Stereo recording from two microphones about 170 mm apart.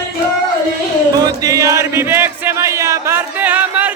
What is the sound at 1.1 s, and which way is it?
Chant, 20° right (ahead or behind).